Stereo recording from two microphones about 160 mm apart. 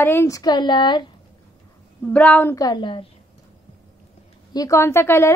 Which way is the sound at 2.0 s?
10° left (ahead or behind).